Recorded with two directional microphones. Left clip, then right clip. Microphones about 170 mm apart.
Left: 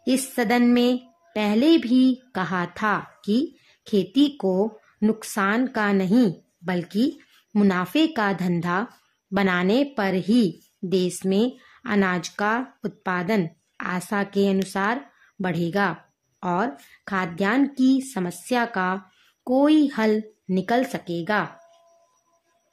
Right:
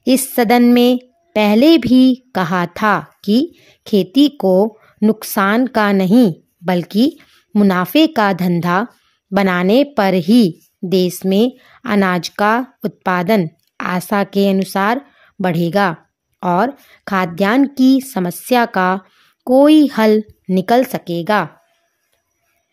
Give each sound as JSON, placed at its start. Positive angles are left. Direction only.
{"t": 0.0, "sound": "a woman's voice", "side_deg": -45}